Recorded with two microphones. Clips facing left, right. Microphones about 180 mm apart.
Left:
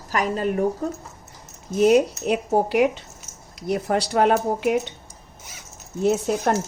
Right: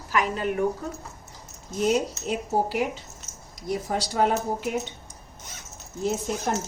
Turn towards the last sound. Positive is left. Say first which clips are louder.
# left 6 dB
turn(degrees=65)  # may be behind; listen again after turning